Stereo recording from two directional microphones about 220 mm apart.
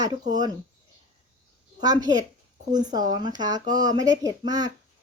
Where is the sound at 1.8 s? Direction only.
20° right (ahead or behind).